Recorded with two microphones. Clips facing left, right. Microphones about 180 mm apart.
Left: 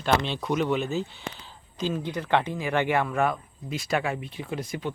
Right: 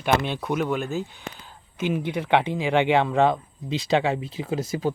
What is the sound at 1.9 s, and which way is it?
A man's voice, 10° right (ahead or behind).